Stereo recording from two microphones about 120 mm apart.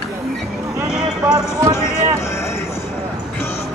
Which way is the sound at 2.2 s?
20° left (ahead or behind).